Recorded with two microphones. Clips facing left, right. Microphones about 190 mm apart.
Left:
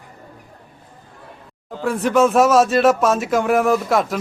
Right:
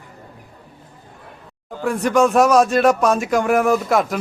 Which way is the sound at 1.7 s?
Centre (ahead or behind).